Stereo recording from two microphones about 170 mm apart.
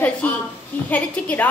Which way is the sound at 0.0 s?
10° left (ahead or behind).